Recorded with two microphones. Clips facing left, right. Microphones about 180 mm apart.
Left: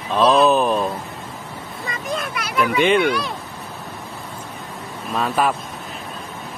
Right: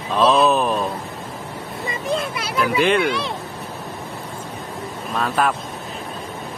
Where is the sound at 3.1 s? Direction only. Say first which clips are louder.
Left 1 dB; 25° right (ahead or behind).